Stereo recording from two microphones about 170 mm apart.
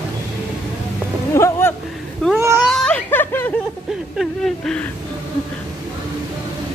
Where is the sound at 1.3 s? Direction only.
15° left (ahead or behind).